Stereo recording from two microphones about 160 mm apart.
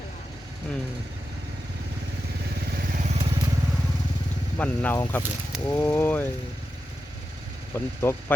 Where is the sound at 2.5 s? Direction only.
70° right (ahead or behind).